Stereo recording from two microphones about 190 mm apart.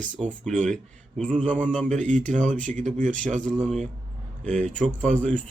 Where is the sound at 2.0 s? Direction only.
40° right (ahead or behind).